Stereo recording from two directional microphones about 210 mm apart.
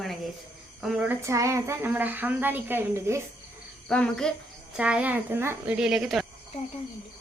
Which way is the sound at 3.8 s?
5° left (ahead or behind).